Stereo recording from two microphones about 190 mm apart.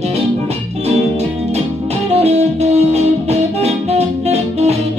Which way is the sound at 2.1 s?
35° right (ahead or behind).